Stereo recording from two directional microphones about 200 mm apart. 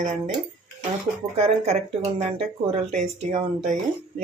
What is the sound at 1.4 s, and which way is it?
Speech, 30° right (ahead or behind).